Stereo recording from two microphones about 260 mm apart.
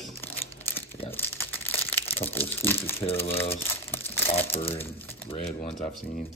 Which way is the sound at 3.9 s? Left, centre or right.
Centre.